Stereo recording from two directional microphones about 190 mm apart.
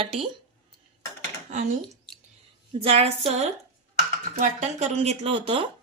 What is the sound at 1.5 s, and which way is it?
Speech, 40° right (ahead or behind).